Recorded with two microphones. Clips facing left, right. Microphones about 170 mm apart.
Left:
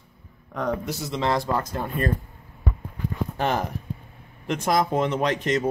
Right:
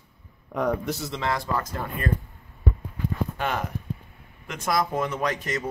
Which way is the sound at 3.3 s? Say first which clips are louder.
Left 8 dB; 35° left (ahead or behind).